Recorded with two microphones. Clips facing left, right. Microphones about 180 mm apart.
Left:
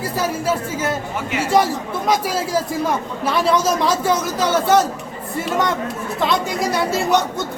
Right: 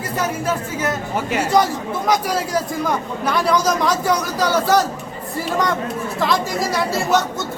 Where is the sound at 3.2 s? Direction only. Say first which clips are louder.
Left 1 dB; 25° left (ahead or behind).